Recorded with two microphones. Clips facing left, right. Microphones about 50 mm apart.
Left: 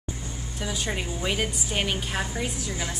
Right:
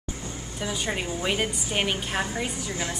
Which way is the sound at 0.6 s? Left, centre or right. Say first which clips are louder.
Right 1 dB; centre.